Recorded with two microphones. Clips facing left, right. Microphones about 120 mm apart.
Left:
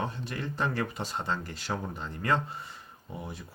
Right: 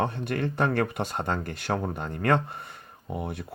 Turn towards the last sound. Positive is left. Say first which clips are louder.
# right 7 dB
turn(degrees=-60)  # may be behind; listen again after turning